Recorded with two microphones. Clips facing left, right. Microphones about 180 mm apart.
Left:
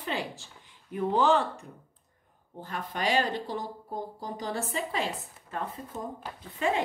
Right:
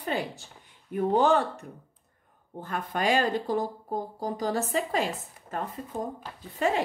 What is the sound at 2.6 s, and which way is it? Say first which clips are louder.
A woman's voice: right 3 dB; 50° right (ahead or behind).